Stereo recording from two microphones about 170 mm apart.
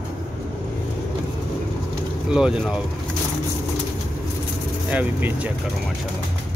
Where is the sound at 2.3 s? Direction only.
5° right (ahead or behind).